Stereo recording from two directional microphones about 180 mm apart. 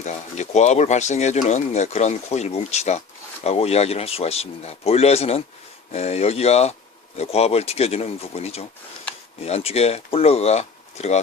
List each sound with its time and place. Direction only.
0.0 s speech: 40° left (ahead or behind)